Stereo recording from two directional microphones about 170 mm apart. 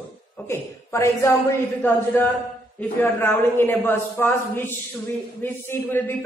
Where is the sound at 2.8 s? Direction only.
10° left (ahead or behind).